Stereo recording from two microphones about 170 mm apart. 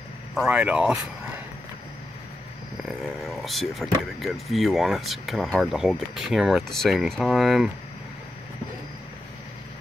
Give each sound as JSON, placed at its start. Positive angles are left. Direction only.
{"t": 0.3, "sound": "speech", "side_deg": -5}
{"t": 2.8, "sound": "speech", "side_deg": 0}